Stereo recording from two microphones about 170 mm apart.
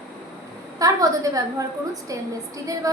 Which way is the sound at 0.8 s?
20° right (ahead or behind).